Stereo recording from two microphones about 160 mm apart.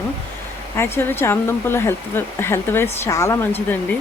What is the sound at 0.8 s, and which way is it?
Speech, 15° left (ahead or behind).